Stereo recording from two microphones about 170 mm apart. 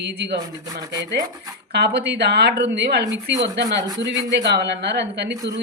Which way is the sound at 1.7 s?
85° right.